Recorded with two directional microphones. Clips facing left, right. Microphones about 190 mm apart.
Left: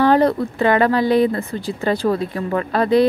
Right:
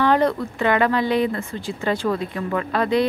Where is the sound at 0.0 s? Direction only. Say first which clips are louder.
Left 4 dB; 35° left (ahead or behind).